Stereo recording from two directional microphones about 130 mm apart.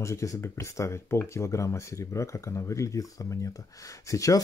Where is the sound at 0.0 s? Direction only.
25° left (ahead or behind).